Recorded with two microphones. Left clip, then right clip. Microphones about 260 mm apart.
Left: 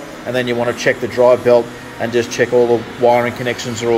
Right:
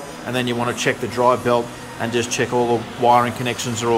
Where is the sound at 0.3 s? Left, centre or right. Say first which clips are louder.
Left 5 dB; centre.